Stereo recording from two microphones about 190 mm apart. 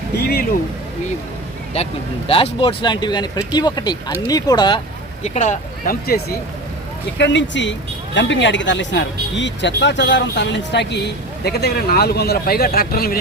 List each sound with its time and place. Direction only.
1.7 s speech: 30° left (ahead or behind)
5.2 s speech: 40° left (ahead or behind); by 6.3 s 55° left (ahead or behind)
7.2 s speech: 70° left (ahead or behind); by 13.1 s 55° left (ahead or behind)